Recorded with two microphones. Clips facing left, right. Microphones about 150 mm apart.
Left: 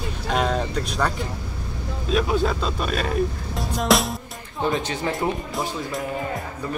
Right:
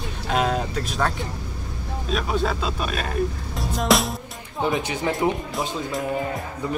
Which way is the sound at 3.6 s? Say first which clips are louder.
Even; centre (ahead or behind).